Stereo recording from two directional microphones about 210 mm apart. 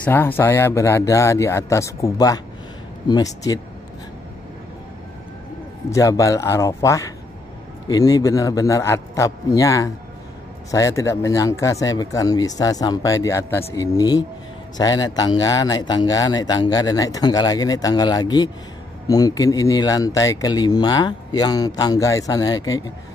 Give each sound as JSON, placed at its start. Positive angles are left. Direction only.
{"t": 0.0, "sound": "speech", "side_deg": 10}
{"t": 5.9, "sound": "speech", "side_deg": 15}